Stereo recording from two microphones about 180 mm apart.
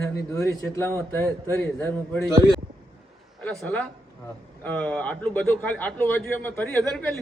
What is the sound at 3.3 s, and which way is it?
A man's voice, 5° left (ahead or behind).